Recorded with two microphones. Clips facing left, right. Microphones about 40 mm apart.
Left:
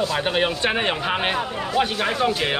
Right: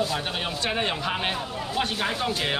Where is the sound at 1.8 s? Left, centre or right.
Centre.